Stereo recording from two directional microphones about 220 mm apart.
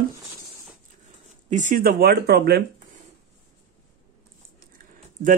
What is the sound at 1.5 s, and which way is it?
Speech, 35° right (ahead or behind).